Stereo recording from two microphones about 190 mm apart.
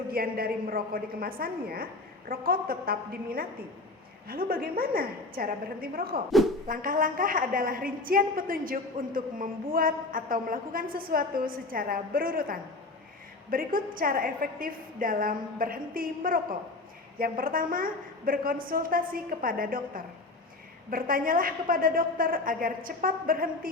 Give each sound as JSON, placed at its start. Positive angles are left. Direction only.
{"t": 0.1, "sound": "a woman's voice", "side_deg": -50}